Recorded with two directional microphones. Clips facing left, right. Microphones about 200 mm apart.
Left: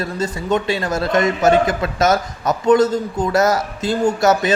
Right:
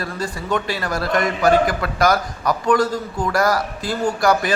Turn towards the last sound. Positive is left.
turn(degrees=25)  # may be behind; listen again after turning